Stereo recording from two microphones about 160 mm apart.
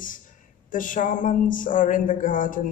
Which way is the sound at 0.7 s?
55° left (ahead or behind).